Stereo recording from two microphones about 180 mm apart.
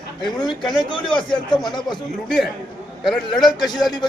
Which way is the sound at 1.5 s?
25° left (ahead or behind).